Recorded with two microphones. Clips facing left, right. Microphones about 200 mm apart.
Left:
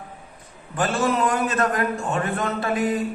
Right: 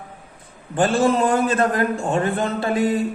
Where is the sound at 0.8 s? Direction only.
30° right (ahead or behind).